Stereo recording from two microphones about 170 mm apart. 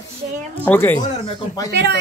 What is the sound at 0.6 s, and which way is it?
Speech, 10° left (ahead or behind).